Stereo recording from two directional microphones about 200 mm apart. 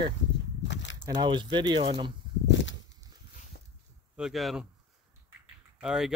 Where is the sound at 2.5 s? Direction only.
65° left (ahead or behind).